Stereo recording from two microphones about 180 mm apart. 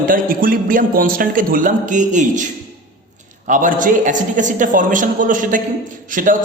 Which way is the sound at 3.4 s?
45° right (ahead or behind).